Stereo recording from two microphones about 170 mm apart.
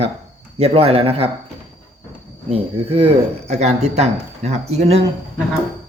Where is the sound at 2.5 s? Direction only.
35° right (ahead or behind).